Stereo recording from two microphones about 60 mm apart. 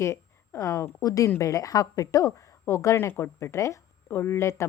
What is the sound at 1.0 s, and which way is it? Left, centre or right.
Speech, left.